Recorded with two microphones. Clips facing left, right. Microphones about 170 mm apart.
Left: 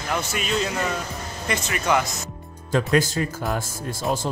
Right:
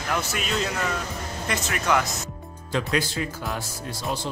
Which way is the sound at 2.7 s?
45° left (ahead or behind).